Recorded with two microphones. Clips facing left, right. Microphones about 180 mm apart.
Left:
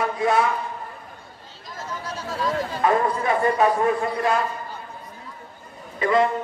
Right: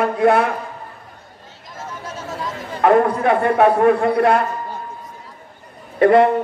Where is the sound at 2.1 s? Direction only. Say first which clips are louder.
Left 3 dB; 20° right (ahead or behind).